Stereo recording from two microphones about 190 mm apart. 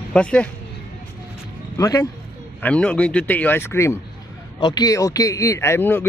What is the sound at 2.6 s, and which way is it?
A man's voice, 5° left (ahead or behind).